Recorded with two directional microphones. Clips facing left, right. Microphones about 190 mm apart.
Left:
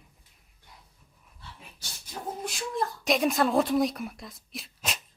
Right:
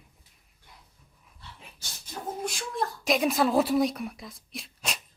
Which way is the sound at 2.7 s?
Centre (ahead or behind).